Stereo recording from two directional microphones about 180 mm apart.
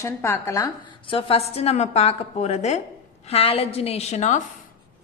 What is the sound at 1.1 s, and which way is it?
A woman's voice, 30° left (ahead or behind).